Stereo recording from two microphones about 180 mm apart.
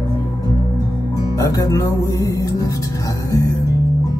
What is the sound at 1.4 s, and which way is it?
Music, 20° left (ahead or behind).